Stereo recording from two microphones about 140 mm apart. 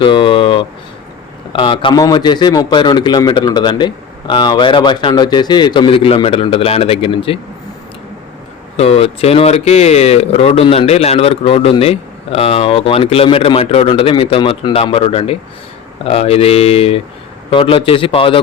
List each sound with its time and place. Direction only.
0.0 s a sound: 35° left (ahead or behind)
2.0 s speech: 30° left (ahead or behind)
8.7 s speech: 45° left (ahead or behind)